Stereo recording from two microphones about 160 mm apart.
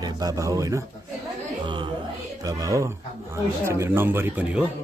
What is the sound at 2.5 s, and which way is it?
A man's voice, 20° right (ahead or behind).